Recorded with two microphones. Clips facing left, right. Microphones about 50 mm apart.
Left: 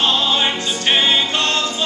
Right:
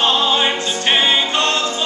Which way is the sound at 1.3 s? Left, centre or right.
Right.